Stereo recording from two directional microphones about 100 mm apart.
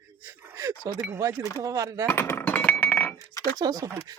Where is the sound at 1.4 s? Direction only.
30° left (ahead or behind).